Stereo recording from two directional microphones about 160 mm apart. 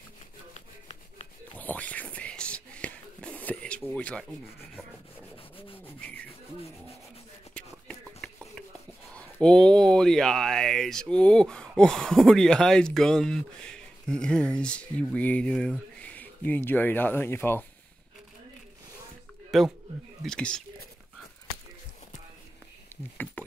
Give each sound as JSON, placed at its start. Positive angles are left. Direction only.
{"t": 0.6, "sound": "rub", "side_deg": 45}
{"t": 1.5, "sound": "whispering", "side_deg": 10}
{"t": 5.9, "sound": "rub", "side_deg": 10}
{"t": 7.5, "sound": "a sound", "side_deg": 5}
{"t": 9.1, "sound": "speech", "side_deg": 5}
{"t": 19.5, "sound": "speech", "side_deg": 0}